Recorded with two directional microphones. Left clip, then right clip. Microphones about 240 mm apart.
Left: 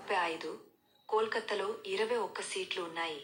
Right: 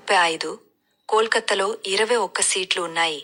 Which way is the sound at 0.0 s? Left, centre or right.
Right.